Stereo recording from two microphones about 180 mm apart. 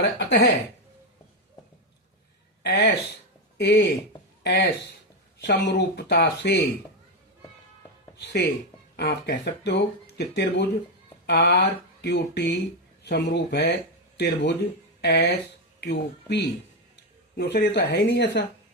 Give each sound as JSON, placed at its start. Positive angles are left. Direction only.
{"t": 0.0, "sound": "speech", "side_deg": 70}
{"t": 2.6, "sound": "speech", "side_deg": 65}
{"t": 8.2, "sound": "speech", "side_deg": 65}